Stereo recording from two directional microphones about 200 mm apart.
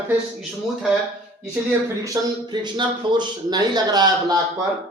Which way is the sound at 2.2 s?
15° right (ahead or behind).